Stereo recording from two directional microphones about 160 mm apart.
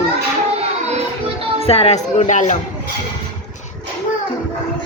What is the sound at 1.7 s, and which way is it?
Speech, 40° left (ahead or behind).